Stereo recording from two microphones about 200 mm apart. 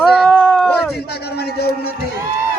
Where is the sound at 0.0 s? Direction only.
Centre (ahead or behind).